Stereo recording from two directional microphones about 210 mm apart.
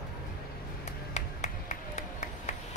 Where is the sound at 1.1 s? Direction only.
35° left (ahead or behind).